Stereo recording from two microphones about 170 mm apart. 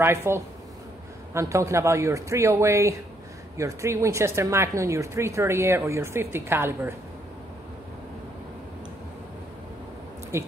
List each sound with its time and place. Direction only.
0.0 s speech: 15° right (ahead or behind)
10.3 s speech: 15° right (ahead or behind)